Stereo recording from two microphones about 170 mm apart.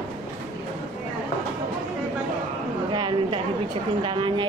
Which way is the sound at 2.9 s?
30° right (ahead or behind).